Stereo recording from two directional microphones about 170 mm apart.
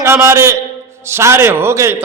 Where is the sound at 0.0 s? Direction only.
15° right (ahead or behind).